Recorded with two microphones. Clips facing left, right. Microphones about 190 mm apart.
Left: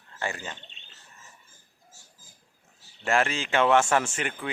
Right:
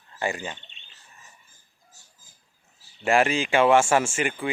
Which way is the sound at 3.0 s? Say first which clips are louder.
Right 4 dB; 15° right (ahead or behind).